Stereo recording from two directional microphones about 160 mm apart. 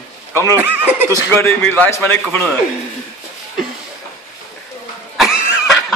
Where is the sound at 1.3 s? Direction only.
10° left (ahead or behind).